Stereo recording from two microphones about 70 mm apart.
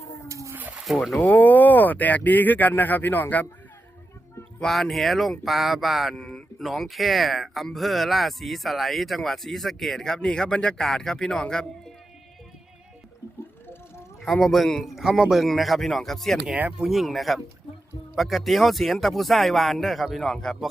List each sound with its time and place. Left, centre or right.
0.9 s speech: centre
1.3 s speech: left
4.6 s speech: centre
6.1 s speech: centre
14.2 s speech: centre
16.7 s speech: centre